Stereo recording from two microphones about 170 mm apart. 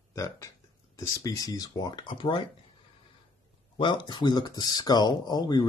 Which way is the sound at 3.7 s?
25° left (ahead or behind).